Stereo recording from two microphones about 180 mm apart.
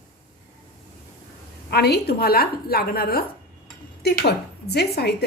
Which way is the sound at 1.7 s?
65° left (ahead or behind).